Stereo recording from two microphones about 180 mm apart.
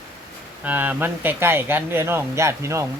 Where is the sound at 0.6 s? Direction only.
10° right (ahead or behind).